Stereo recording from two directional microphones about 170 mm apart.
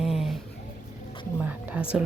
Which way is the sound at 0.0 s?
Centre (ahead or behind).